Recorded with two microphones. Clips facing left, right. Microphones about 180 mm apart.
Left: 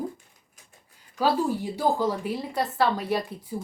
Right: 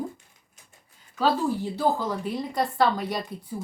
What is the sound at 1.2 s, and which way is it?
A woman's voice, 15° left (ahead or behind).